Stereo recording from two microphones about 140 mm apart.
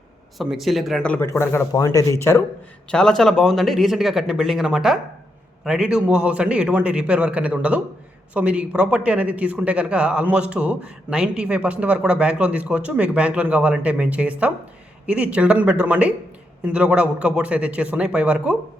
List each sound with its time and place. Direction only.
0.3 s speech: centre (ahead or behind)
1.1 s speech: 15° left (ahead or behind)
2.9 s a man's voice: 5° left (ahead or behind)